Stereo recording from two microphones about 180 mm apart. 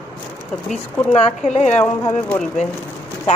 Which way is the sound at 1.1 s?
35° left (ahead or behind).